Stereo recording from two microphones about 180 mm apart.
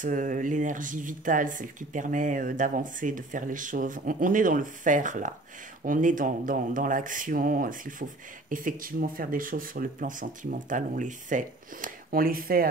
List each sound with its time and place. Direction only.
0.0 s speech: 45° right (ahead or behind)